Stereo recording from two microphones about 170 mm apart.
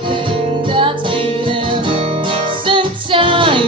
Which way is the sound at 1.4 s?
30° right (ahead or behind).